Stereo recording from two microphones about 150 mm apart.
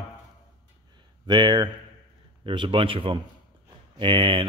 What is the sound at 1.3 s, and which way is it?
Speech, 30° right (ahead or behind).